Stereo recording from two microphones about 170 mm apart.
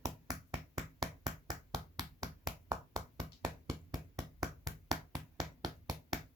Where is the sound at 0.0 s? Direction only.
20° right (ahead or behind).